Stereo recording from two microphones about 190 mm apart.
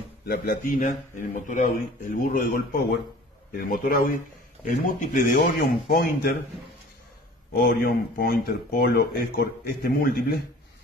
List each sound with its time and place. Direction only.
0.3 s speech: 50° left (ahead or behind)
7.5 s speech: 55° left (ahead or behind)